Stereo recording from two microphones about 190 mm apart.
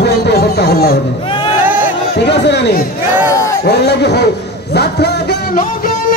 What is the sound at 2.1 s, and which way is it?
Speech, 65° left (ahead or behind).